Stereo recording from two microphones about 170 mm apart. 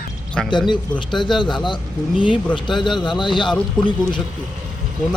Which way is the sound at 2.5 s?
30° left (ahead or behind).